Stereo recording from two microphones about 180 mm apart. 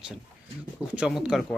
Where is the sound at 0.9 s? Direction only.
5° right (ahead or behind).